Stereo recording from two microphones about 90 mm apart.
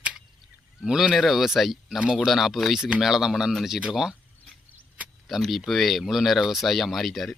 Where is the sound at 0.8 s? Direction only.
5° right (ahead or behind).